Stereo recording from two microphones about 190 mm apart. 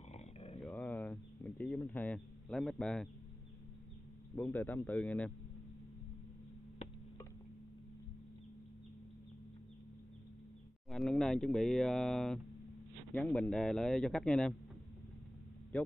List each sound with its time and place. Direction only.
0.1 s dog: 30° left (ahead or behind)
0.6 s a sound: centre (ahead or behind)
1.9 s speech: 5° left (ahead or behind)
4.4 s a man's voice: 10° left (ahead or behind)
10.9 s speech: centre (ahead or behind)
15.7 s speech: 10° left (ahead or behind)